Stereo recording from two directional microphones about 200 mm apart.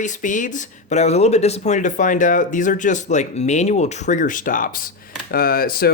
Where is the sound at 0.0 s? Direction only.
40° left (ahead or behind).